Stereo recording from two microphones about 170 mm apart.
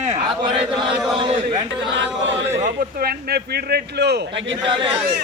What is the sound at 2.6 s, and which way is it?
A man's voice, 65° right (ahead or behind).